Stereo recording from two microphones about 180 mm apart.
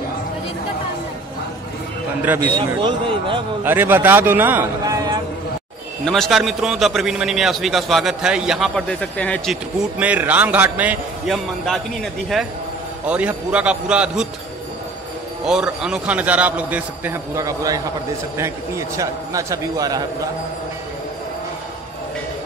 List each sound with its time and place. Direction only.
2.2 s a man's voice: 10° right (ahead or behind)
2.8 s speech: 30° right (ahead or behind)
3.6 s a man's voice: 10° right (ahead or behind)
4.8 s a sound: 20° right (ahead or behind)
6.0 s a man's voice: centre (ahead or behind)
9.9 s a man's voice: 10° right (ahead or behind)
15.4 s a man's voice: 5° right (ahead or behind); by 20.2 s 20° right (ahead or behind)